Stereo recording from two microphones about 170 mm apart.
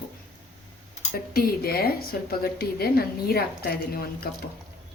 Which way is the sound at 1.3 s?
65° left (ahead or behind).